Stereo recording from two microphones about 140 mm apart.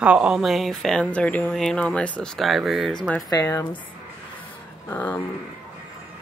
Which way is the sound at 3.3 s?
25° left (ahead or behind).